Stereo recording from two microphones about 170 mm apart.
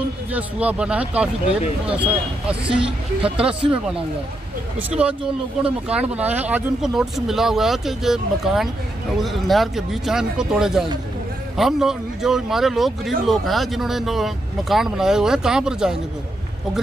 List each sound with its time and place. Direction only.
0.3 s speech: 10° right (ahead or behind)